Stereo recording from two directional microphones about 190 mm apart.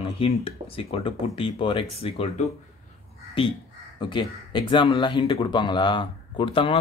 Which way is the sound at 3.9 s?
25° left (ahead or behind).